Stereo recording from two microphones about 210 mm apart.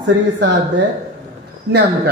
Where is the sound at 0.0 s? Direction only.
55° right (ahead or behind).